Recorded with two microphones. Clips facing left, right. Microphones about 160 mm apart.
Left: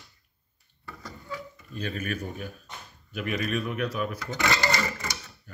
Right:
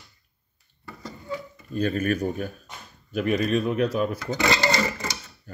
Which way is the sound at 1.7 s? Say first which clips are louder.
Right 9 dB; 45° right (ahead or behind).